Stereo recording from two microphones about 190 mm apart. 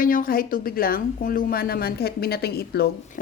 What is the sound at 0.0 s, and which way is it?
A woman's voice, 45° left (ahead or behind).